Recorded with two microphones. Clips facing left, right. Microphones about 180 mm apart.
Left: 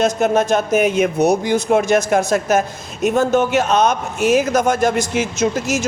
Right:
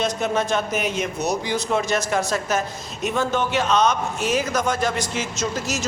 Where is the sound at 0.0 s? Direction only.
45° left (ahead or behind).